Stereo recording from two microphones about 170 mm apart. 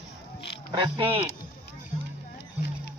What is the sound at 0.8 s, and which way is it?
Speech, 30° right (ahead or behind).